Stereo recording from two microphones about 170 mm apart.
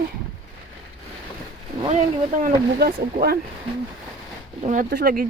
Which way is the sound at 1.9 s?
45° right (ahead or behind).